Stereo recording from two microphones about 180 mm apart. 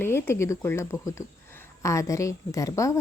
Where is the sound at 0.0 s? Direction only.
15° left (ahead or behind).